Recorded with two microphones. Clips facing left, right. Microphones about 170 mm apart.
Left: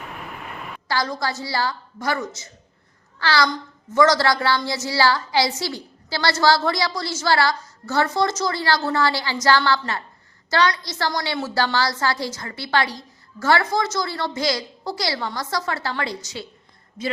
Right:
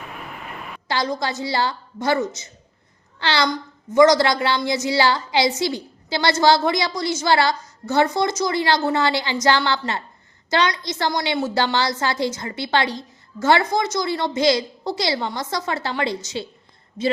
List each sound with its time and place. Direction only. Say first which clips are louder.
0.9 s a woman's voice: right 1 dB; 20° right (ahead or behind)